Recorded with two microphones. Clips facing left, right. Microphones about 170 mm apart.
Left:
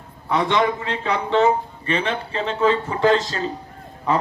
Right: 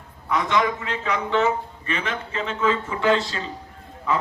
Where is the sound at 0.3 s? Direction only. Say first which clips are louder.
Left 3 dB; 30° left (ahead or behind).